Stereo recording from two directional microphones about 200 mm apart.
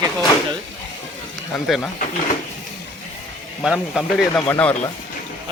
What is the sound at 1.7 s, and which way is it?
Speech, centre (ahead or behind).